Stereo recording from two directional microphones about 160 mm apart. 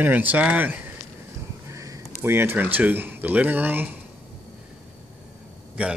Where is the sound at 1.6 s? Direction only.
20° right (ahead or behind).